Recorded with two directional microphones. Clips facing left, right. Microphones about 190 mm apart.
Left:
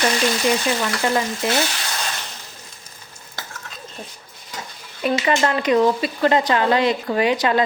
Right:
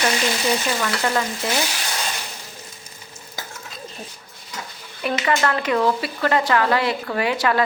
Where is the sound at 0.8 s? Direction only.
20° left (ahead or behind).